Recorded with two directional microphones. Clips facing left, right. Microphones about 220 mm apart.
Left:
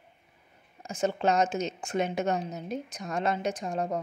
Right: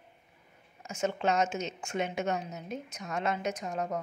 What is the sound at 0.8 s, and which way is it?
A woman's voice, 35° left (ahead or behind).